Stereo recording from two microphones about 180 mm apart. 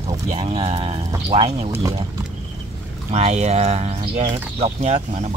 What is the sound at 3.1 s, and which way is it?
Speech, 40° right (ahead or behind).